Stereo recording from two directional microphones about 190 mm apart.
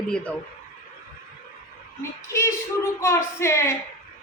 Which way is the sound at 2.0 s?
15° left (ahead or behind).